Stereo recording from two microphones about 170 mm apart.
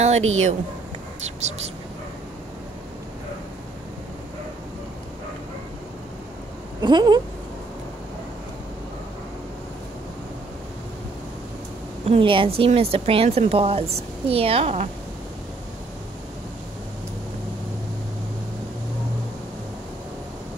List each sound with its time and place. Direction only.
0.0 s a woman's voice: 40° right (ahead or behind)
6.8 s a sound: 25° right (ahead or behind)
12.1 s a woman's voice: 30° right (ahead or behind)